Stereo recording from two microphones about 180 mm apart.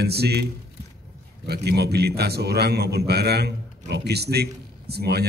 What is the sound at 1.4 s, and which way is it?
A man's voice, 65° right (ahead or behind).